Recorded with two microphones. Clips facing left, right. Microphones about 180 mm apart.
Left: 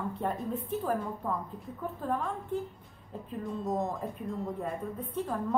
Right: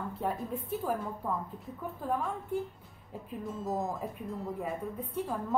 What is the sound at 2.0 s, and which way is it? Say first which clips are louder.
Speech: even; 10° right (ahead or behind).